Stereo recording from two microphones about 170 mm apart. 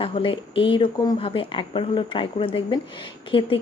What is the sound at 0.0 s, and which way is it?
Speech, 30° left (ahead or behind).